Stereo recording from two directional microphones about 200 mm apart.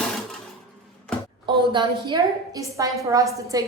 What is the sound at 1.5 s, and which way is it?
A woman's voice, 25° right (ahead or behind).